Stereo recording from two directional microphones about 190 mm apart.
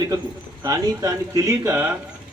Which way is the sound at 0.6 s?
20° right (ahead or behind).